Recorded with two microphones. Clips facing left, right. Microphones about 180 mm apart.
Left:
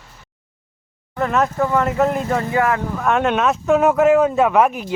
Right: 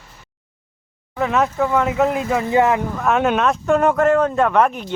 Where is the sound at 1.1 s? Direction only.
Centre (ahead or behind).